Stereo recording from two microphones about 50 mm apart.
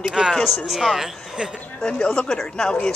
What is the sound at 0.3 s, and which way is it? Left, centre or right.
Speech, centre.